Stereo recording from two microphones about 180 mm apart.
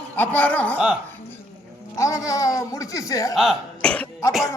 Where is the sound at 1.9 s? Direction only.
20° left (ahead or behind).